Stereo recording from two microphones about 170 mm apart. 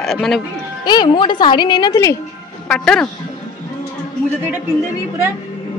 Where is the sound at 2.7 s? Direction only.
5° left (ahead or behind).